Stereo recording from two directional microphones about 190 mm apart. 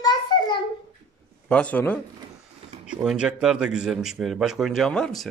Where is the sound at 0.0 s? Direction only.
20° left (ahead or behind).